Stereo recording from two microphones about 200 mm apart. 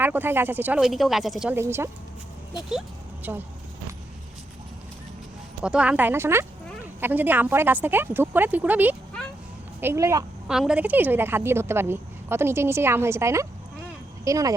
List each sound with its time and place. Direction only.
0.0 s a woman's voice: 10° right (ahead or behind)
3.3 s a woman's voice: 10° right (ahead or behind)
5.6 s a woman's voice: 5° right (ahead or behind)
10.5 s a woman's voice: 5° right (ahead or behind)